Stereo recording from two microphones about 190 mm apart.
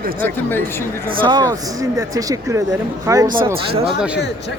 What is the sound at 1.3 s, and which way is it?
A man's voice, 20° right (ahead or behind).